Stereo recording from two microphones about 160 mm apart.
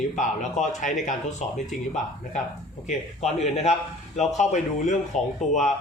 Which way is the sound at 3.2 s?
45° left (ahead or behind).